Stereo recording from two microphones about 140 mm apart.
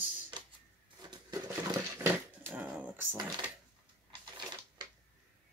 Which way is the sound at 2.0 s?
15° right (ahead or behind).